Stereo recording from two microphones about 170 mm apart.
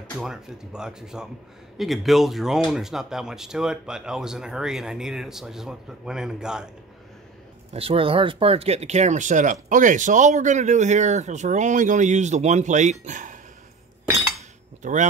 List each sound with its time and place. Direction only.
0.2 s speech: 5° right (ahead or behind)
7.7 s speech: 35° right (ahead or behind)
14.8 s speech: 45° right (ahead or behind)